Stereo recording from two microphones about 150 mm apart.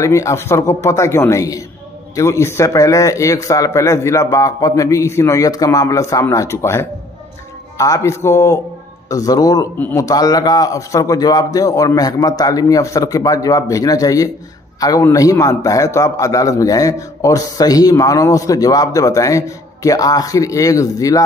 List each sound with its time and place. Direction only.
0.0 s a man's voice: 20° left (ahead or behind)